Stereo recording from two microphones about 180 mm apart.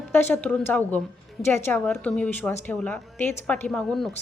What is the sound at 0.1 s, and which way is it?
Speech, 10° left (ahead or behind).